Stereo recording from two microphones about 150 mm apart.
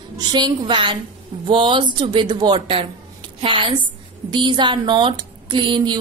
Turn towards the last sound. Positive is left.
turn(degrees=-30)  # may be behind; listen again after turning